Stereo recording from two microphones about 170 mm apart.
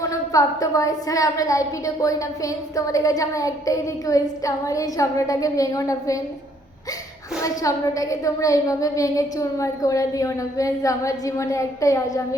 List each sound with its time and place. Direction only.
0.0 s a woman's voice: 20° left (ahead or behind)
7.4 s a woman's voice: 20° left (ahead or behind)